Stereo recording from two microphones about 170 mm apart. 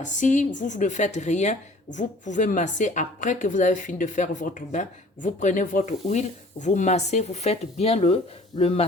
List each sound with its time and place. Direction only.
0.0 s a woman's voice: 45° left (ahead or behind)